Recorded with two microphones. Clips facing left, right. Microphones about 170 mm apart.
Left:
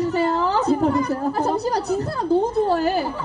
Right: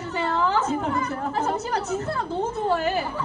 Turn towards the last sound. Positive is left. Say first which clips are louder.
# left 4 dB
turn(degrees=35)  # may be behind; listen again after turning